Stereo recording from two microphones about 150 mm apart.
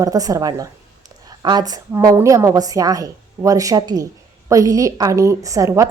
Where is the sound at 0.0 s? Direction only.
25° right (ahead or behind).